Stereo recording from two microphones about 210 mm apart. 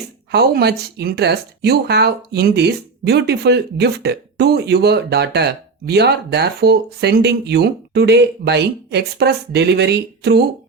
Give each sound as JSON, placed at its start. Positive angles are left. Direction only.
{"t": 0.3, "sound": "speech", "side_deg": -50}